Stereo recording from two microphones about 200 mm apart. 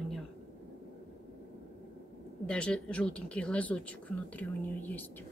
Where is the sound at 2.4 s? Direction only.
5° left (ahead or behind).